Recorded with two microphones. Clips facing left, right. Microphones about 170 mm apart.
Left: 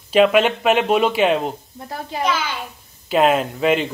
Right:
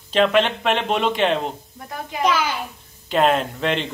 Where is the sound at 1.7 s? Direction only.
30° left (ahead or behind).